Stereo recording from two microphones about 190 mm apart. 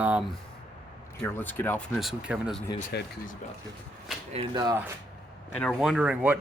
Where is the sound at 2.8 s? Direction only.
55° left (ahead or behind).